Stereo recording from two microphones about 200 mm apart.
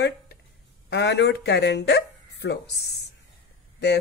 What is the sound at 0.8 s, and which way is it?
A woman's voice, 60° left (ahead or behind).